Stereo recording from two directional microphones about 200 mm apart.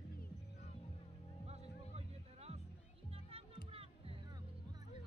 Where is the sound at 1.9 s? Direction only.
30° right (ahead or behind).